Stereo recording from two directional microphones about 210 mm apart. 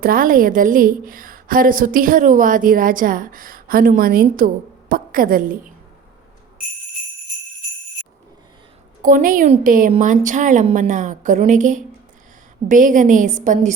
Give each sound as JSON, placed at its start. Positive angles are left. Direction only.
{"t": 0.0, "sound": "a woman's voice", "side_deg": -40}
{"t": 9.0, "sound": "a woman's voice", "side_deg": -40}